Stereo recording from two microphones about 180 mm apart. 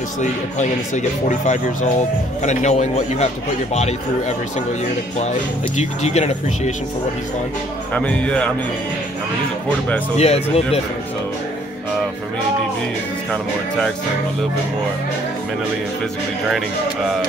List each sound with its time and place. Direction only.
0.2 s speech: 40° left (ahead or behind)
5.8 s speech: 35° left (ahead or behind)
7.9 s speech: 5° left (ahead or behind)
10.1 s speech: 35° left (ahead or behind)
13.3 s speech: 5° left (ahead or behind)